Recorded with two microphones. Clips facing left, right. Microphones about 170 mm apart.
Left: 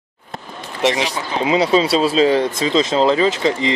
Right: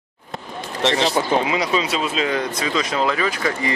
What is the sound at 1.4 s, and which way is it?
Speech, 25° left (ahead or behind).